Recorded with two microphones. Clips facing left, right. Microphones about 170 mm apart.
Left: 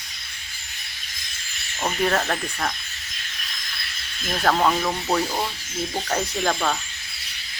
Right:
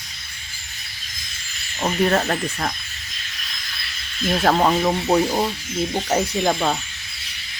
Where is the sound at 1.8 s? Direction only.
5° right (ahead or behind).